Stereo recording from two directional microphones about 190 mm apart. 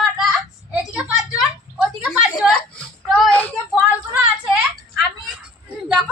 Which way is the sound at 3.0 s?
Centre (ahead or behind).